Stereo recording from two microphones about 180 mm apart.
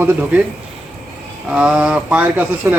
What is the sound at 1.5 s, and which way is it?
Speech, 5° right (ahead or behind).